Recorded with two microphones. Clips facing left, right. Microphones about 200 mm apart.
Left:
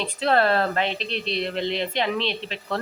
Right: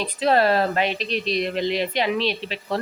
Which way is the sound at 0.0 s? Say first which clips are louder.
Right 2 dB; 15° right (ahead or behind).